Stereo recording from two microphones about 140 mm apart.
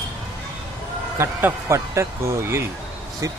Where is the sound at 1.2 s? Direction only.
20° right (ahead or behind).